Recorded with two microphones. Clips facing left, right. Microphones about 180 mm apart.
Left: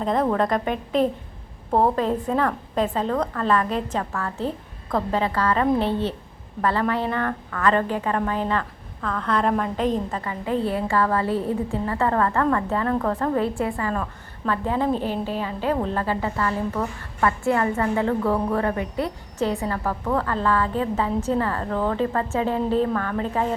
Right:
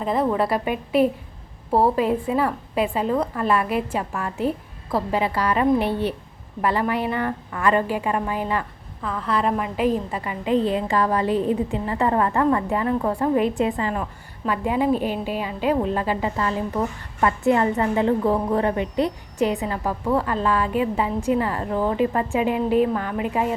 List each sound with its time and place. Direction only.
0.0 s a woman's voice: 5° right (ahead or behind)